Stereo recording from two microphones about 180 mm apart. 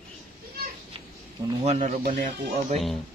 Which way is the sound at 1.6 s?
35° right (ahead or behind).